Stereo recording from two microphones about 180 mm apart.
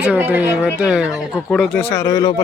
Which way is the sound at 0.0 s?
10° right (ahead or behind).